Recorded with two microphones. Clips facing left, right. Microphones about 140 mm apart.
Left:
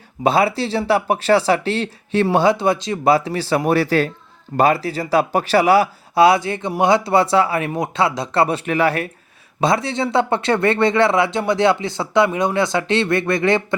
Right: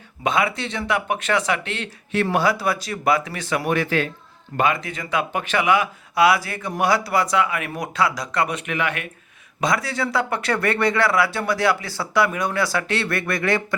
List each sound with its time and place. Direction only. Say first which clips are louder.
0.2 s speech: left 6 dB; 35° left (ahead or behind)